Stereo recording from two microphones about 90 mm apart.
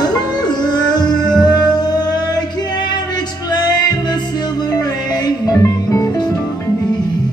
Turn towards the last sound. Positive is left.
turn(degrees=40)  # may be behind; listen again after turning